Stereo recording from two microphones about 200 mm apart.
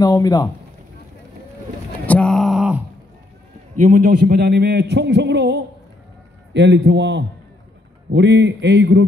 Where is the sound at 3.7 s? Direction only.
40° right (ahead or behind); by 9.0 s 60° right (ahead or behind).